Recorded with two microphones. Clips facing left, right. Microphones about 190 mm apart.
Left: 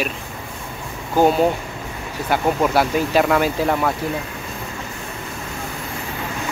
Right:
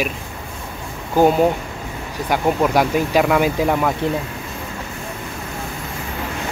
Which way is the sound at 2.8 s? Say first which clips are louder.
Right 1 dB; 10° right (ahead or behind).